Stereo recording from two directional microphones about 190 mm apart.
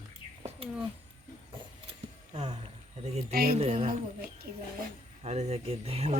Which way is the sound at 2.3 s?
35° right (ahead or behind).